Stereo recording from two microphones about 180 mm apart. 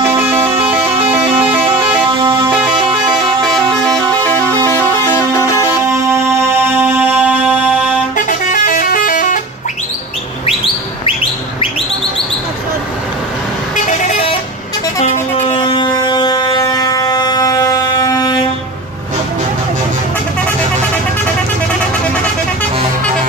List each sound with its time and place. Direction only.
0.0 s vehicle horn: 10° right (ahead or behind)
2.1 s music: 30° right (ahead or behind)
4.2 s vehicle horn: 10° left (ahead or behind)
6.8 s music: 10° right (ahead or behind)
8.3 s vehicle: 50° left (ahead or behind)
13.8 s vehicle: 45° left (ahead or behind)
15.7 s a sound: 25° left (ahead or behind)